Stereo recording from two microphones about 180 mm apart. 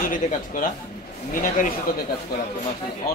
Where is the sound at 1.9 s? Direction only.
55° left (ahead or behind).